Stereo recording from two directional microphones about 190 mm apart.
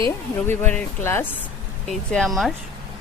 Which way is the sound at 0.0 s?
10° left (ahead or behind).